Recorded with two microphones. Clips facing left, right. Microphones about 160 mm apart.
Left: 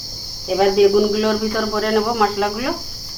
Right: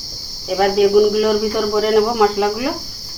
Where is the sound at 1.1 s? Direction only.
10° right (ahead or behind).